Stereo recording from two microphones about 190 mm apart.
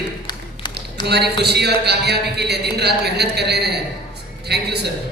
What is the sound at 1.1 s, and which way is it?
A man's voice, 60° right (ahead or behind).